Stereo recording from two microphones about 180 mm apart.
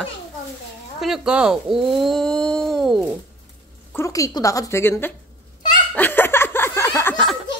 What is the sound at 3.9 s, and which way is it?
A woman's voice, 15° left (ahead or behind).